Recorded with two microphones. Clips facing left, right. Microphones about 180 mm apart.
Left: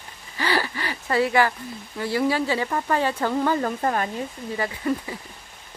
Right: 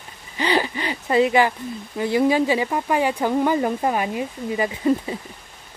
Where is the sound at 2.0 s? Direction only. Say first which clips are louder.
Right 5 dB; 20° right (ahead or behind).